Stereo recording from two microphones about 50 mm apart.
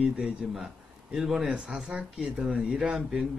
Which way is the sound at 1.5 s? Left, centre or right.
Centre.